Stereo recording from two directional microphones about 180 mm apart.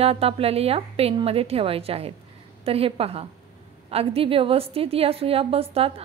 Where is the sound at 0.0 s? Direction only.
35° right (ahead or behind).